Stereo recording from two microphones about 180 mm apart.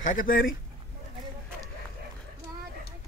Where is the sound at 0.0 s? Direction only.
50° left (ahead or behind).